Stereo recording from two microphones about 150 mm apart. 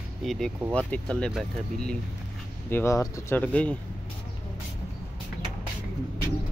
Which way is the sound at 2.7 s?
15° left (ahead or behind).